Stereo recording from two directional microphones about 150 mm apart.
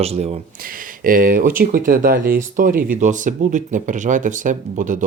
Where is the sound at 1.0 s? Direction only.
70° right (ahead or behind).